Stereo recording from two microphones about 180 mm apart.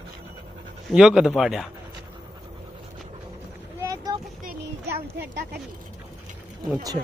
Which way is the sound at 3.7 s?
20° right (ahead or behind).